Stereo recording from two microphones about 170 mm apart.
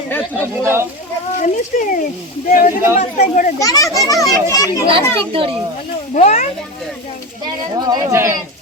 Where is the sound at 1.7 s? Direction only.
45° left (ahead or behind).